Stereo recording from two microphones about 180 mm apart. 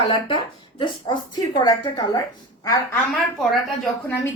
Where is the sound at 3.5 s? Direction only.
Centre (ahead or behind).